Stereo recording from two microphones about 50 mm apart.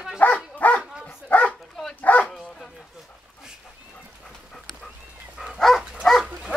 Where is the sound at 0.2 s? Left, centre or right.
Left.